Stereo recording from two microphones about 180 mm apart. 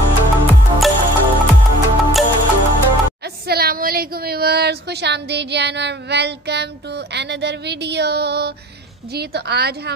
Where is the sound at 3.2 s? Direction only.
60° right (ahead or behind).